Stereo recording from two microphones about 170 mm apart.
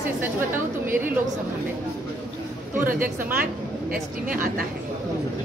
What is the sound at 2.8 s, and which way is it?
A woman's voice, 55° right (ahead or behind).